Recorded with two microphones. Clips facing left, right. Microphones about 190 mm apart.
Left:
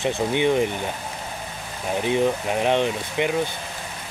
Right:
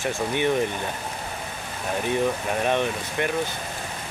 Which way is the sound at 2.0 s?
15° left (ahead or behind).